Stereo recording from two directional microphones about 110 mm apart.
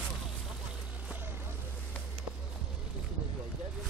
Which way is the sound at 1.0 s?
15° right (ahead or behind).